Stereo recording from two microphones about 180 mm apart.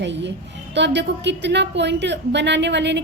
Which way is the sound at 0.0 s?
75° right (ahead or behind).